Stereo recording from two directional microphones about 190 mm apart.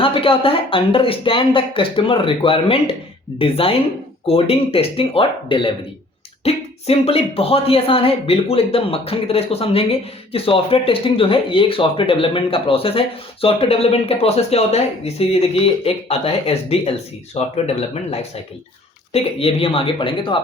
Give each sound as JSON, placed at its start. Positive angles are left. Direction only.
{"t": 0.0, "sound": "speech", "side_deg": 30}